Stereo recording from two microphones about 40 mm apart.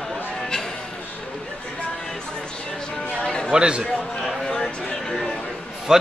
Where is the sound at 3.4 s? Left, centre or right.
Right.